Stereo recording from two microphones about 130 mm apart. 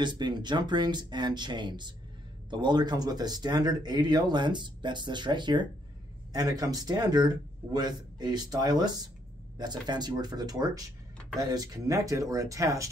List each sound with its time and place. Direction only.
0.0 s speech: 35° right (ahead or behind)